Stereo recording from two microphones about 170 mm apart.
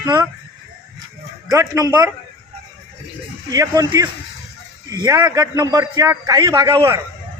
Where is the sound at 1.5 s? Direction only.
20° right (ahead or behind).